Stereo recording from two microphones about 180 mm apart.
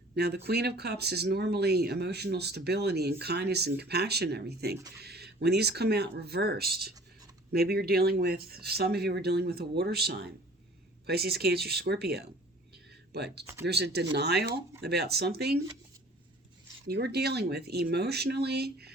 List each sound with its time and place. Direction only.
0.2 s speech: 65° right (ahead or behind)
12.7 s a sound: 65° right (ahead or behind)
13.7 s speech: 65° right (ahead or behind)
16.8 s speech: 65° right (ahead or behind)